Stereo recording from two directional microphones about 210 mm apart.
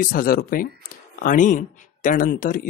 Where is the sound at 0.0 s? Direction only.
45° left (ahead or behind).